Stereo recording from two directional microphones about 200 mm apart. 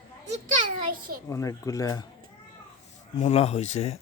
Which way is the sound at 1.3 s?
15° left (ahead or behind).